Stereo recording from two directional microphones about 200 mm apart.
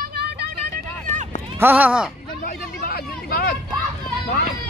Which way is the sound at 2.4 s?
50° left (ahead or behind).